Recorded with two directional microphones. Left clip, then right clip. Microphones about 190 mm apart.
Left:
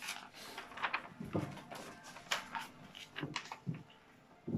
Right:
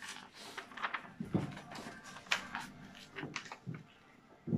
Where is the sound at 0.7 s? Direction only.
Centre (ahead or behind).